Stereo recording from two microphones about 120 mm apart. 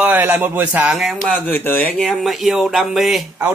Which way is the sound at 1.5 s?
15° left (ahead or behind).